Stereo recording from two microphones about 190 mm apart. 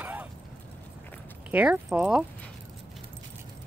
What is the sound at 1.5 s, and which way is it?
Speech, 5° right (ahead or behind).